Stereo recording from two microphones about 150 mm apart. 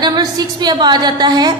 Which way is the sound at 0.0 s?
25° right (ahead or behind).